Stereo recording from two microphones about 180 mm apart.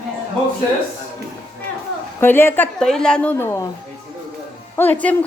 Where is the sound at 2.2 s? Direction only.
10° left (ahead or behind).